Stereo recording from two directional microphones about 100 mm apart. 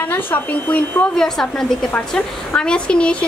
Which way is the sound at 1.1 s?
5° left (ahead or behind).